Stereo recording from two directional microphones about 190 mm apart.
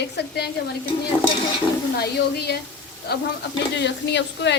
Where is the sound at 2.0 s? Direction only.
55° left (ahead or behind).